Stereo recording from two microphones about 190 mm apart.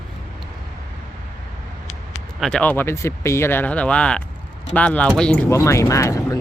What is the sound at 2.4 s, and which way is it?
Speech, 5° left (ahead or behind).